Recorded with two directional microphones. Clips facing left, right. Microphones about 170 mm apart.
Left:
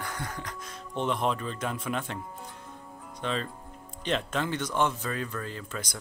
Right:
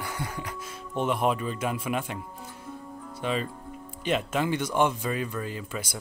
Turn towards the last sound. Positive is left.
turn(degrees=-10)  # may be behind; listen again after turning